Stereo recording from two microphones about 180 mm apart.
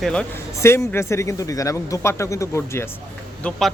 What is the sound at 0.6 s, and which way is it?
A man's voice, 15° left (ahead or behind).